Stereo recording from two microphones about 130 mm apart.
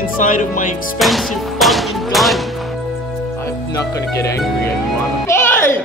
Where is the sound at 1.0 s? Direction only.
Centre (ahead or behind).